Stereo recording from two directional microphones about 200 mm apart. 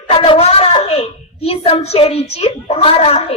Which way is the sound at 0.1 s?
30° left (ahead or behind).